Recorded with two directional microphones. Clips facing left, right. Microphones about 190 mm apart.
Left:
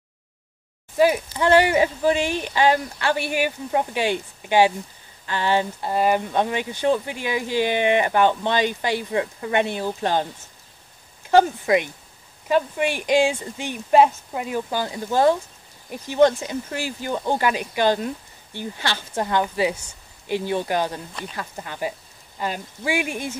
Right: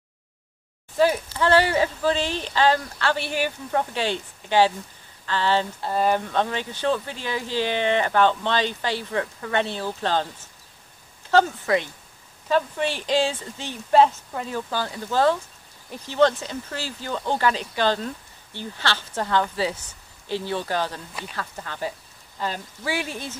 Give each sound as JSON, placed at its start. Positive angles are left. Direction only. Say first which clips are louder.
{"t": 0.9, "sound": "speech", "louder": "left 2 dB", "side_deg": 15}
{"t": 11.2, "sound": "speech", "louder": "left 3 dB", "side_deg": 15}